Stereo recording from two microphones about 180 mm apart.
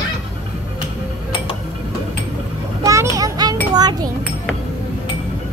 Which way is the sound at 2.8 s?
15° right (ahead or behind).